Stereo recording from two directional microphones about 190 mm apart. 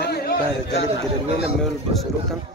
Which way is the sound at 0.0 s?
55° left (ahead or behind).